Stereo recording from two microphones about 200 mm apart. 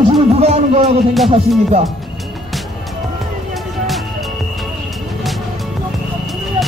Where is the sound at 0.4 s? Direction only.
30° right (ahead or behind).